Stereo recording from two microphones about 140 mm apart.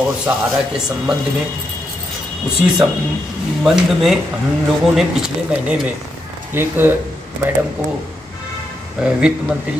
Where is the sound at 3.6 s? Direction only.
5° right (ahead or behind).